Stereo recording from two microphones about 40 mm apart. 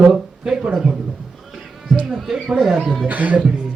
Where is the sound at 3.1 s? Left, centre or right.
Right.